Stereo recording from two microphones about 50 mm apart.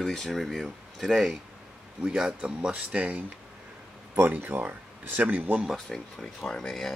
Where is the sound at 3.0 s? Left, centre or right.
Right.